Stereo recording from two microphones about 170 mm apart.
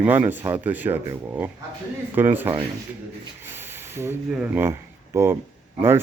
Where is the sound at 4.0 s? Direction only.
10° right (ahead or behind).